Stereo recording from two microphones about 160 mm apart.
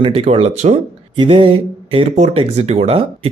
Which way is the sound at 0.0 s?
40° right (ahead or behind).